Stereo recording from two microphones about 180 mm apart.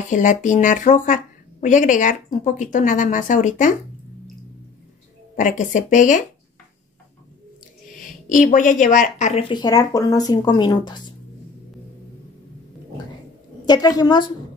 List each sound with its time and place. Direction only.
0.1 s speech: 45° left (ahead or behind)
5.3 s speech: 45° left (ahead or behind)
7.9 s a woman's voice: 45° left (ahead or behind); by 11.0 s 25° left (ahead or behind)
13.7 s a woman's voice: 20° left (ahead or behind)